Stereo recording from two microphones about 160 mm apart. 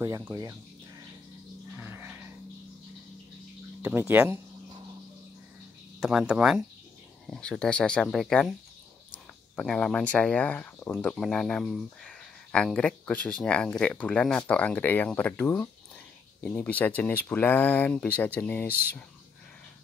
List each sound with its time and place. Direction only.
0.0 s speech: 20° right (ahead or behind)
1.8 s a sound: 10° right (ahead or behind)
3.8 s speech: 10° right (ahead or behind)
5.9 s speech: centre (ahead or behind)